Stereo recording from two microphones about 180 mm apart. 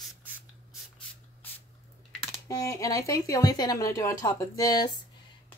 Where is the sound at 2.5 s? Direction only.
20° left (ahead or behind).